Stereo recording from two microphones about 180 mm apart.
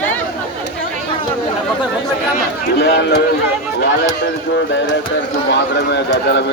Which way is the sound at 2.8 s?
70° left (ahead or behind).